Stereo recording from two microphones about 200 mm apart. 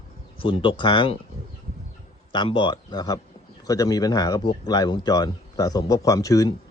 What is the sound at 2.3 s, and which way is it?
A man's voice, 25° left (ahead or behind).